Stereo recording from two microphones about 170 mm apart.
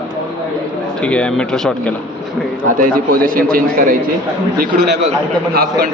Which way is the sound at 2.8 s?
55° right (ahead or behind).